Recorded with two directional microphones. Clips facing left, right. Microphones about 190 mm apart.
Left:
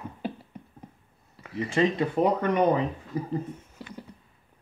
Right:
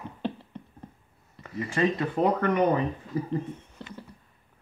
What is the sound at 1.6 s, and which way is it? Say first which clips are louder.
Speech: left 2 dB; 20° left (ahead or behind).